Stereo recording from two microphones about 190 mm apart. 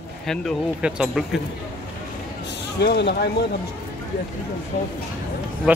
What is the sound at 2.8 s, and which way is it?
Speech, 60° left (ahead or behind).